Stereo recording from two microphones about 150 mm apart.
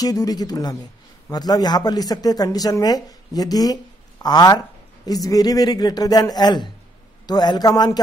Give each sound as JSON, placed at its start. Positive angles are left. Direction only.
{"t": 0.0, "sound": "speech", "side_deg": 25}